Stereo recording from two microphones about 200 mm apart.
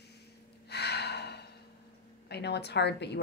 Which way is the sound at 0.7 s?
55° left (ahead or behind).